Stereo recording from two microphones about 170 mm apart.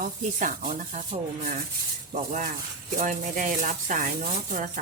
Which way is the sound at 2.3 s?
50° right (ahead or behind).